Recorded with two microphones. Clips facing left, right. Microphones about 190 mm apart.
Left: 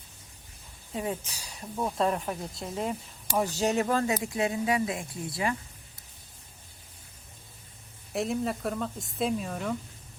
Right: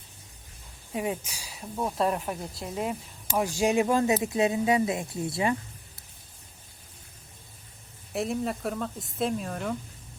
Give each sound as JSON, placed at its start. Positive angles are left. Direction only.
{"t": 0.9, "sound": "speech", "side_deg": -10}
{"t": 8.1, "sound": "speech", "side_deg": 0}